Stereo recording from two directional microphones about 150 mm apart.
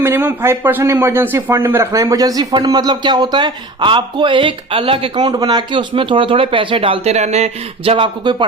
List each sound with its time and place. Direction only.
0.0 s a man's voice: 15° right (ahead or behind); by 7.9 s 45° right (ahead or behind)
7.9 s speech: 30° right (ahead or behind)